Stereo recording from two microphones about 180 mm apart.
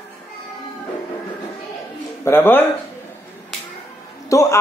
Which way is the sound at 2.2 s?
10° left (ahead or behind).